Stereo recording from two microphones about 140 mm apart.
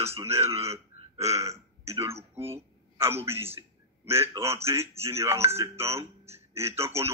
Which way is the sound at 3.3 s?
15° right (ahead or behind).